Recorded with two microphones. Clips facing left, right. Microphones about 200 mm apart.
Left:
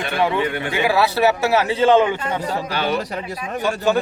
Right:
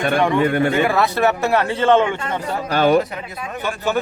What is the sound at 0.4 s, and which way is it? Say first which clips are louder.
Speech: right 7 dB; 45° right (ahead or behind).